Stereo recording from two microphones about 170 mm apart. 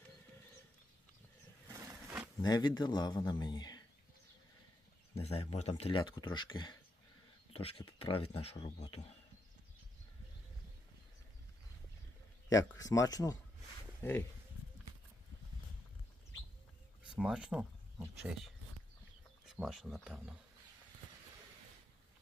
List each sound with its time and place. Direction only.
2.4 s speech: 25° left (ahead or behind)
5.2 s speech: 35° left (ahead or behind)
12.5 s speech: 20° left (ahead or behind)
17.0 s speech: 5° right (ahead or behind)